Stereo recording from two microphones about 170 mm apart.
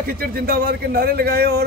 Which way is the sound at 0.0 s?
60° right (ahead or behind).